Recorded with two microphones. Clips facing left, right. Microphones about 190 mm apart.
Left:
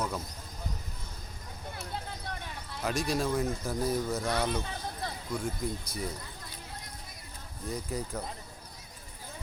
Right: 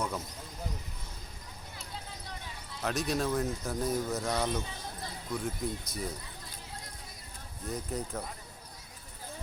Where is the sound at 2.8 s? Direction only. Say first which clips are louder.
Left 1 dB; centre (ahead or behind).